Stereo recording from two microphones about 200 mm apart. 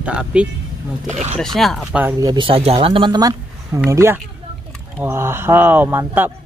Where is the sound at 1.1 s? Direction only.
35° right (ahead or behind).